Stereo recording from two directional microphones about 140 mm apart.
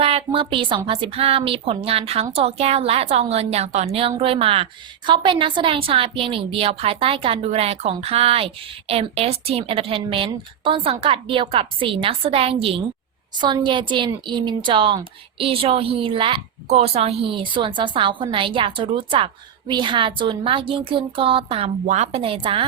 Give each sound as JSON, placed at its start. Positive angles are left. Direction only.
{"t": 0.0, "sound": "a sound", "side_deg": -45}
{"t": 0.9, "sound": "a woman's voice", "side_deg": -40}
{"t": 21.8, "sound": "a woman's voice", "side_deg": -55}